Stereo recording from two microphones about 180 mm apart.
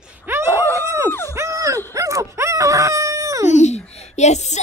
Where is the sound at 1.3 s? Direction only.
15° right (ahead or behind).